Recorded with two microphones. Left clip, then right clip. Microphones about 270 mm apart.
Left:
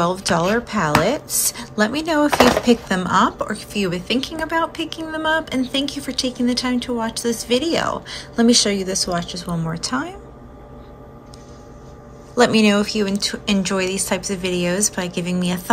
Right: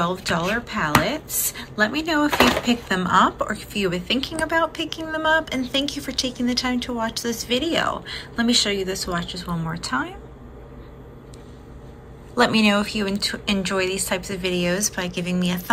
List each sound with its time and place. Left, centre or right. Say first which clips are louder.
0.0 s a woman's voice: left 4 dB; centre
12.4 s a woman's voice: left 3 dB; centre